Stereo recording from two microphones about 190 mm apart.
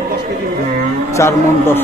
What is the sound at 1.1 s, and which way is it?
Speech, 15° left (ahead or behind).